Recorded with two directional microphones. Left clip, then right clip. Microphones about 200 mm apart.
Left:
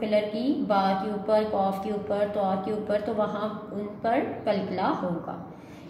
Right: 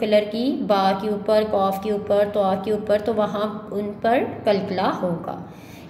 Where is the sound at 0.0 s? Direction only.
45° right (ahead or behind).